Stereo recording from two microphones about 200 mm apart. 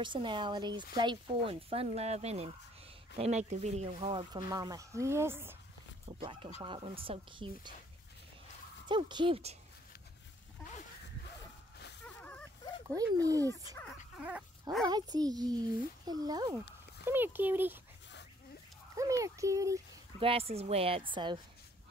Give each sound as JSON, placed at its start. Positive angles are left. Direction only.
{"t": 0.0, "sound": "speech", "side_deg": -25}
{"t": 6.0, "sound": "speech", "side_deg": -25}
{"t": 8.8, "sound": "speech", "side_deg": -25}
{"t": 12.0, "sound": "a sound", "side_deg": 5}
{"t": 12.8, "sound": "speech", "side_deg": -15}
{"t": 14.1, "sound": "dog", "side_deg": -5}
{"t": 14.9, "sound": "speech", "side_deg": -20}
{"t": 18.9, "sound": "speech", "side_deg": -15}
{"t": 20.2, "sound": "speech", "side_deg": -30}